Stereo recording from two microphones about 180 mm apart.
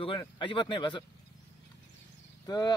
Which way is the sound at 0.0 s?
30° left (ahead or behind).